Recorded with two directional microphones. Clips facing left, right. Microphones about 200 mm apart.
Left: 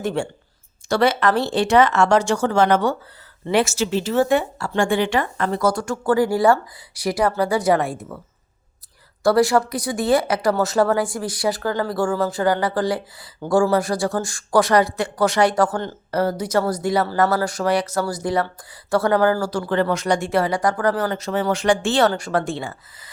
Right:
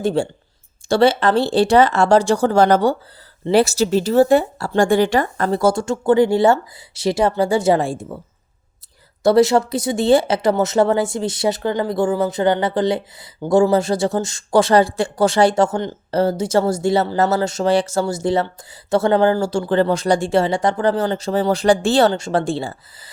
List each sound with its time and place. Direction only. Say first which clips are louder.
0.0 s speech: right 5 dB; 30° right (ahead or behind)
9.2 s speech: right 3 dB; 25° right (ahead or behind)